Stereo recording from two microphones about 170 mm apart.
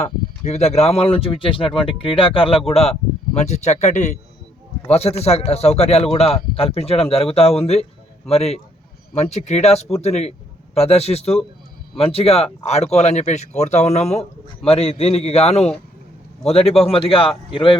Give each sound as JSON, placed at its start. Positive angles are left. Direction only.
{"t": 0.0, "sound": "a man's voice", "side_deg": 40}